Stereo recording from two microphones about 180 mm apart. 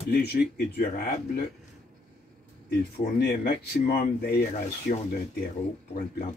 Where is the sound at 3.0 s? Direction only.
60° left (ahead or behind).